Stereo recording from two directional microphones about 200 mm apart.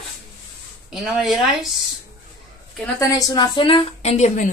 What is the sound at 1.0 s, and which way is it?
Speech, centre (ahead or behind).